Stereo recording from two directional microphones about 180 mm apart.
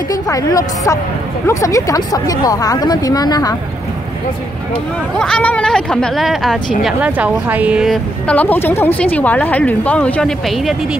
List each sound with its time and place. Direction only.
0.1 s speech: 20° left (ahead or behind)
5.2 s a woman's voice: 5° left (ahead or behind)